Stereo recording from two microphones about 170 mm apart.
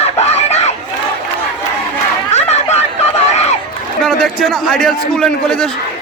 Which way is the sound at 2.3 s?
40° left (ahead or behind).